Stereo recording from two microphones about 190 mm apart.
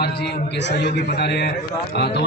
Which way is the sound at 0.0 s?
60° left (ahead or behind).